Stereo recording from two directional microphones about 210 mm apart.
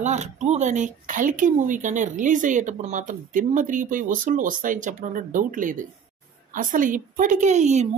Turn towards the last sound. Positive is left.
turn(degrees=-35)  # may be behind; listen again after turning